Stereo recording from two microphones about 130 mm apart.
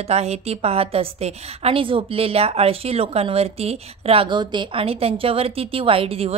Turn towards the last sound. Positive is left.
turn(degrees=-50)  # may be behind; listen again after turning